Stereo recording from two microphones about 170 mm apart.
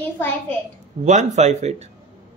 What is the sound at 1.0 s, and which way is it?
Speech, 45° right (ahead or behind).